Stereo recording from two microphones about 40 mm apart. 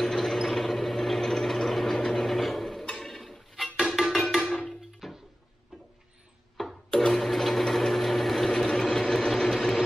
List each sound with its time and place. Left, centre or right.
0.0 s a sound: centre
3.9 s music: centre
4.5 s music: left
5.0 s music: centre
6.9 s sewing machine: centre
8.5 s a sound: centre